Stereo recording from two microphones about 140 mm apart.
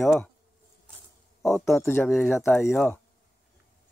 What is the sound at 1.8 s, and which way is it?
Speech, 15° left (ahead or behind).